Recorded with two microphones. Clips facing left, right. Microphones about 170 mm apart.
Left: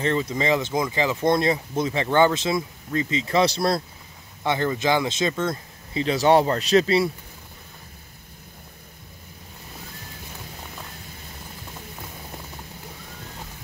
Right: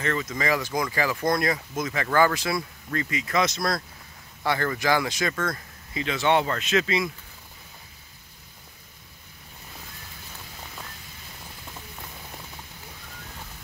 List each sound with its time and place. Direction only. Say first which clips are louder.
0.0 s speech: left 4 dB; 30° left (ahead or behind)
4.4 s speech: left 3 dB; 20° left (ahead or behind); by 7.1 s 35° left (ahead or behind)